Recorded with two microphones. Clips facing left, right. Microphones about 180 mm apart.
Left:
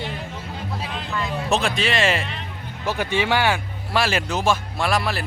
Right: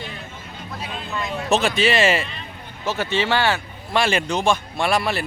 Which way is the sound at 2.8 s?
15° left (ahead or behind).